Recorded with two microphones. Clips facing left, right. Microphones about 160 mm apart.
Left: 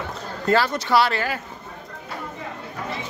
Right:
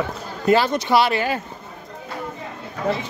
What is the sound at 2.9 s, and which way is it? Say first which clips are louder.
Speech: right 11 dB; 85° right.